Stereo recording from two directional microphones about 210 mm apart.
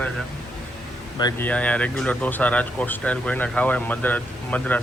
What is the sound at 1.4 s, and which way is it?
Speech, 5° left (ahead or behind).